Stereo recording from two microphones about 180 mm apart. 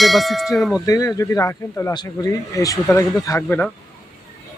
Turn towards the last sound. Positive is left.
turn(degrees=15)  # may be behind; listen again after turning